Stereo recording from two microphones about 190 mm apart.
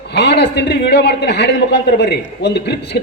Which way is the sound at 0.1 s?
60° left (ahead or behind).